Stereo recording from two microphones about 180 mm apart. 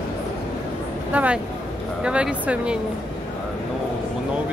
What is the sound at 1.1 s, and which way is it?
Speech, 10° right (ahead or behind).